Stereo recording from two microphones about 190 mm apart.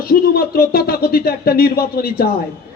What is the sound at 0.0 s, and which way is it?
A man's voice, 50° left (ahead or behind).